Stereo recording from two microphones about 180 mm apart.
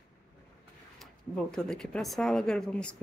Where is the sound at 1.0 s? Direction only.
5° left (ahead or behind).